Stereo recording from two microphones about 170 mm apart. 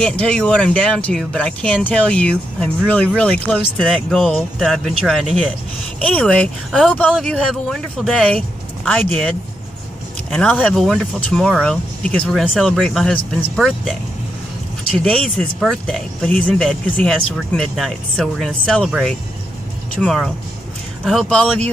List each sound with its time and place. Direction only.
0.0 s speech: 5° left (ahead or behind)
10.3 s speech: 10° left (ahead or behind)
15.0 s speech: 5° left (ahead or behind)